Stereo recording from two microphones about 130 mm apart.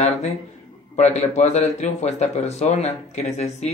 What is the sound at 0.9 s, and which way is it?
Speech, 60° left (ahead or behind).